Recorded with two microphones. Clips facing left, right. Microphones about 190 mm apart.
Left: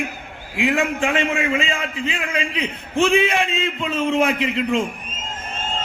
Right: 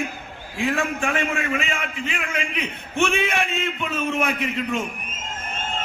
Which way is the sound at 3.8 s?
30° left (ahead or behind).